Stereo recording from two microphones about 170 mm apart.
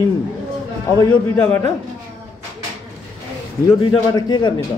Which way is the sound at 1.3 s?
10° left (ahead or behind).